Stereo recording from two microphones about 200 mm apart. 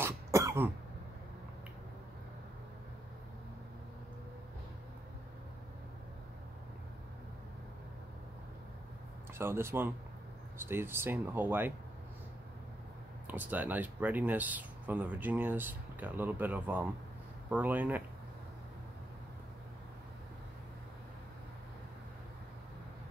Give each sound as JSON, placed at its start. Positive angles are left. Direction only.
{"t": 0.0, "sound": "throat clearing", "side_deg": -15}
{"t": 9.3, "sound": "speech", "side_deg": -10}
{"t": 13.3, "sound": "speech", "side_deg": -10}